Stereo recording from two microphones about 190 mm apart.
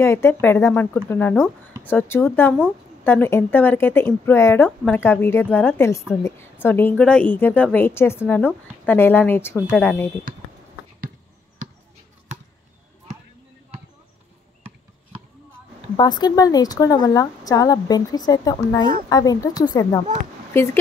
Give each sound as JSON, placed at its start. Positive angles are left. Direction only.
{"t": 0.0, "sound": "a woman's voice", "side_deg": 15}
{"t": 16.0, "sound": "a woman's voice", "side_deg": 20}